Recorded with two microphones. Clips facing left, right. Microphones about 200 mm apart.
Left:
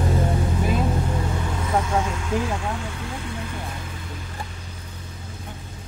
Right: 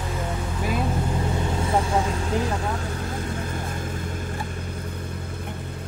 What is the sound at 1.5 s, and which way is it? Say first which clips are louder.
Vehicle: even; 30° right (ahead or behind).